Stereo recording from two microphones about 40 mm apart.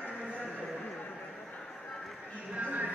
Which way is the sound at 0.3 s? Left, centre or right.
Left.